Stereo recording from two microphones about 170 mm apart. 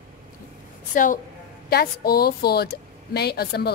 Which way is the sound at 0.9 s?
50° left (ahead or behind).